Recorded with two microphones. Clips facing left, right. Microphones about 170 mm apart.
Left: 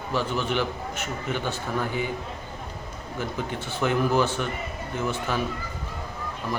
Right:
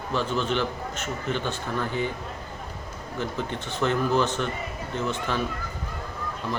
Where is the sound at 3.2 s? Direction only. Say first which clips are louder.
Even; 10° left (ahead or behind).